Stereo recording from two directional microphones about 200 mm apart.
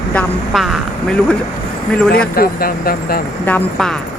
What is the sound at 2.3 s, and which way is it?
Speech, 45° left (ahead or behind).